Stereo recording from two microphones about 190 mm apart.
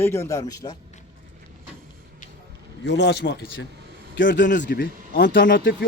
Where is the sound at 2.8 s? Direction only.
65° left (ahead or behind).